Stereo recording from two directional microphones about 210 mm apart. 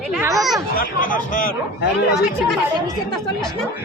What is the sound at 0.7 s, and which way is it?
Speech, 40° left (ahead or behind).